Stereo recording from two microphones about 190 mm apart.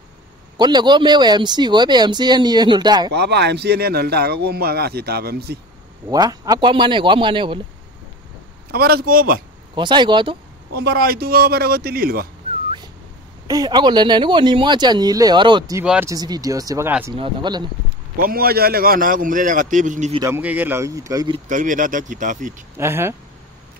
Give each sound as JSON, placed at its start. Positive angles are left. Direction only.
{"t": 0.6, "sound": "speech", "side_deg": -25}
{"t": 3.1, "sound": "speech", "side_deg": -60}
{"t": 6.0, "sound": "speech", "side_deg": -20}
{"t": 8.7, "sound": "a man's voice", "side_deg": -55}
{"t": 9.8, "sound": "speech", "side_deg": -25}
{"t": 10.8, "sound": "a man's voice", "side_deg": -55}
{"t": 13.5, "sound": "speech", "side_deg": -20}
{"t": 15.8, "sound": "speech", "side_deg": -5}
{"t": 16.1, "sound": "speech", "side_deg": -20}
{"t": 17.1, "sound": "speech", "side_deg": -25}
{"t": 18.1, "sound": "a man's voice", "side_deg": -50}
{"t": 20.2, "sound": "speech", "side_deg": -15}
{"t": 21.5, "sound": "a man's voice", "side_deg": -45}
{"t": 22.8, "sound": "speech", "side_deg": -15}